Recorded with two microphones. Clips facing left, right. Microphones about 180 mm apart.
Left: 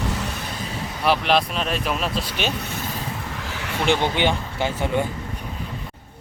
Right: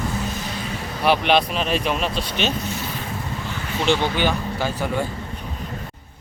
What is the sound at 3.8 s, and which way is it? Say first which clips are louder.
Speech: even; 15° left (ahead or behind).